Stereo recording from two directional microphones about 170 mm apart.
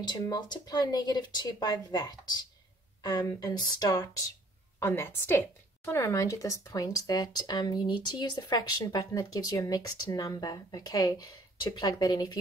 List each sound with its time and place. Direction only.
0.0 s a woman's voice: 25° left (ahead or behind)